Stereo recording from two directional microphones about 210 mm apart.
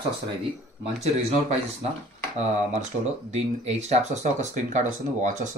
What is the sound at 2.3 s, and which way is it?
Speech, 35° right (ahead or behind).